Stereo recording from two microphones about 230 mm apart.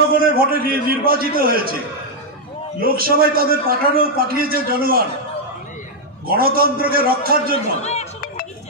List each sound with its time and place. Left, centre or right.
0.4 s a man's voice: right
2.8 s a man's voice: right
6.2 s a man's voice: right
7.5 s speech: left